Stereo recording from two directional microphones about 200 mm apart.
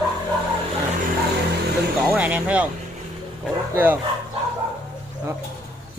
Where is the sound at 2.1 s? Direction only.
5° right (ahead or behind).